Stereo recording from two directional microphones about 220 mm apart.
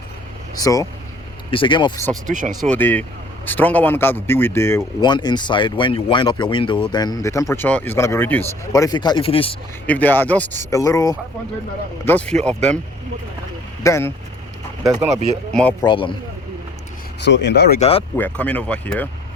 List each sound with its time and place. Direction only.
0.5 s speech: 15° left (ahead or behind)
2.2 s speech: 35° right (ahead or behind)
2.5 s speech: 5° left (ahead or behind); by 9.6 s 25° left (ahead or behind)
9.8 s speech: 10° left (ahead or behind)
13.8 s speech: 10° left (ahead or behind)
14.8 s speech: 15° right (ahead or behind)
15.5 s speech: 5° left (ahead or behind)
15.9 s speech: 20° left (ahead or behind)
17.2 s speech: 50° left (ahead or behind)
17.7 s speech: 25° left (ahead or behind)
18.2 s speech: 5° left (ahead or behind)